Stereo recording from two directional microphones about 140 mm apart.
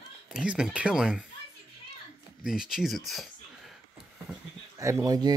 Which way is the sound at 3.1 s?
Centre (ahead or behind).